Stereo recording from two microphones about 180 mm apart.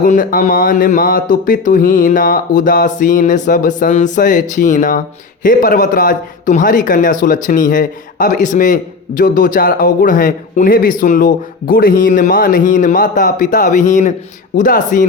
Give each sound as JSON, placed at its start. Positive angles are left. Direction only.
{"t": 0.0, "sound": "speech", "side_deg": 50}